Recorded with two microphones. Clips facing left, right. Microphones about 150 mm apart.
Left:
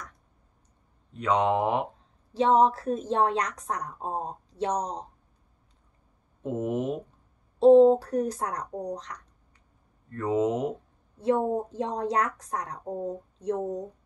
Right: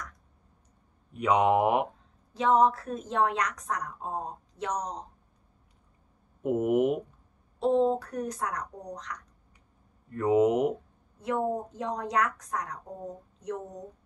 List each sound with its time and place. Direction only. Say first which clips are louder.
1.1 s speech: right 1 dB; 10° right (ahead or behind)
2.3 s a woman's voice: left 2 dB; 30° left (ahead or behind)
6.4 s speech: right 4 dB; 10° right (ahead or behind)
7.5 s a woman's voice: left 9 dB; 30° left (ahead or behind)
10.1 s speech: right 3 dB; 10° right (ahead or behind)
11.1 s a woman's voice: left 4 dB; 30° left (ahead or behind)